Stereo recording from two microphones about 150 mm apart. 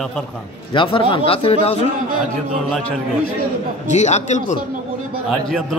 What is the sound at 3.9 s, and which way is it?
Speech, 50° left (ahead or behind).